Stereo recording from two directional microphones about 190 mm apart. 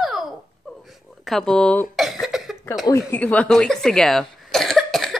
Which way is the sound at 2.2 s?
Centre (ahead or behind).